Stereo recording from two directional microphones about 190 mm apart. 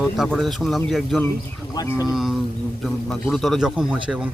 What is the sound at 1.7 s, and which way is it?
Speech, 20° left (ahead or behind).